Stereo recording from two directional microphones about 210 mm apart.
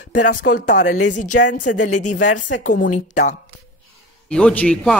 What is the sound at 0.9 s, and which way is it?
A woman's voice, 90° left.